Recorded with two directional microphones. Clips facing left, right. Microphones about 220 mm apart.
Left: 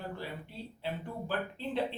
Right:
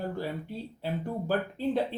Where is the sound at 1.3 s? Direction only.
45° right (ahead or behind).